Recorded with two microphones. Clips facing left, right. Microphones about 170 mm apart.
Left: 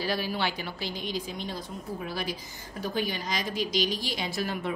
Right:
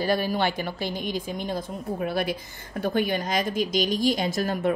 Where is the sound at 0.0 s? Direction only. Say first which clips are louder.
Right 6 dB; 50° right (ahead or behind).